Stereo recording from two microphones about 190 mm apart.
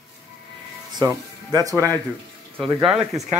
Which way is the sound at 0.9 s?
20° right (ahead or behind).